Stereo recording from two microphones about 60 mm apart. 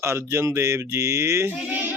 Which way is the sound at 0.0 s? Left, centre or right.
Right.